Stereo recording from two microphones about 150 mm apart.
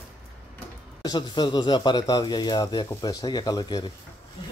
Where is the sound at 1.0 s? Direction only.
25° left (ahead or behind).